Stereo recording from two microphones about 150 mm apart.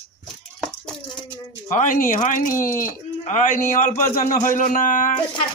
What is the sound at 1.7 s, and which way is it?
Speech, 60° left (ahead or behind).